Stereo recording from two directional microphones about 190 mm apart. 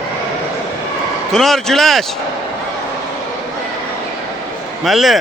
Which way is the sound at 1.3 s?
Centre (ahead or behind).